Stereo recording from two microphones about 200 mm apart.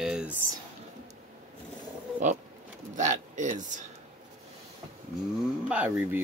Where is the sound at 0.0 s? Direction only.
5° right (ahead or behind).